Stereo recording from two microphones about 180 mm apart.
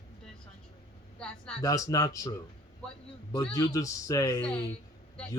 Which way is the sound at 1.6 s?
20° left (ahead or behind).